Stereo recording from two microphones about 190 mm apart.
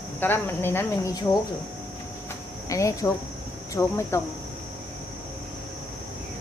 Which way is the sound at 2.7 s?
15° left (ahead or behind).